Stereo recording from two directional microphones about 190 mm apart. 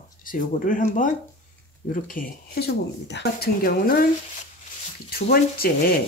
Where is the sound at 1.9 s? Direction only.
45° left (ahead or behind).